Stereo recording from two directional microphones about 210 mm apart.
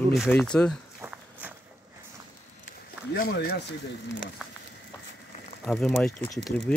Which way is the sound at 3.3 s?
50° left (ahead or behind).